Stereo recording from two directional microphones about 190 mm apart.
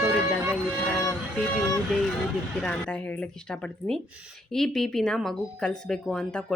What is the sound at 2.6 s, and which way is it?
A woman's voice, 5° left (ahead or behind).